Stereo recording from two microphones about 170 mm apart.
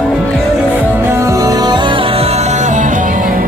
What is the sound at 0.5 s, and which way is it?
Music, 10° right (ahead or behind).